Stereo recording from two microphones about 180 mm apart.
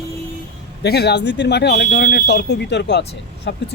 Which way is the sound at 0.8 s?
65° left (ahead or behind).